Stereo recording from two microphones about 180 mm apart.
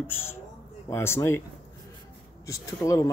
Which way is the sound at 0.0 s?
15° left (ahead or behind).